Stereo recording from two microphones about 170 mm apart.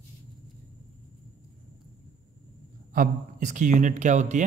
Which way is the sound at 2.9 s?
50° right (ahead or behind).